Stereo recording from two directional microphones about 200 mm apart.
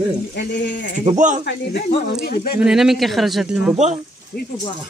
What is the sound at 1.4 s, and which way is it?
Speech, 55° left (ahead or behind).